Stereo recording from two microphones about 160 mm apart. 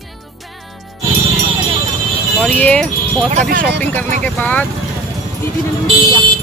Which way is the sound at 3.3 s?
60° right (ahead or behind).